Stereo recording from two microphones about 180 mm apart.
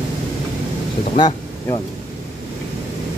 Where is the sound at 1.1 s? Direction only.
25° left (ahead or behind).